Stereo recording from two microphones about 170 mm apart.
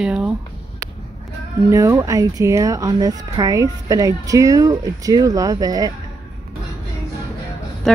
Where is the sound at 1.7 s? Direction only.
20° right (ahead or behind).